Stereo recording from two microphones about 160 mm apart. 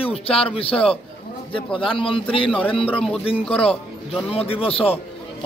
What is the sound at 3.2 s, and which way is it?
A man's voice, 35° left (ahead or behind).